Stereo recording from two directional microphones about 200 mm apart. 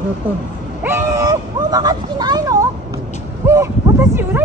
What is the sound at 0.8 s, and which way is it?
Speech, 10° right (ahead or behind).